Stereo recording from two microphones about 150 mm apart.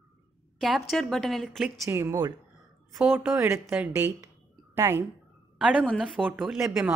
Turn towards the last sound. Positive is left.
turn(degrees=0)  # may be behind; listen again after turning